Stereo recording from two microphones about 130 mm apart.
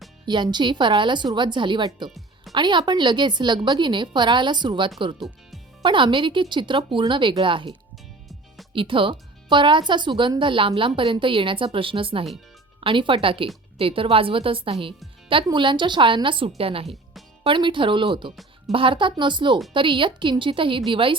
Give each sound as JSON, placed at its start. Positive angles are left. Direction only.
{"t": 0.3, "sound": "speech", "side_deg": -35}
{"t": 2.0, "sound": "music", "side_deg": 0}
{"t": 2.5, "sound": "a woman's voice", "side_deg": -35}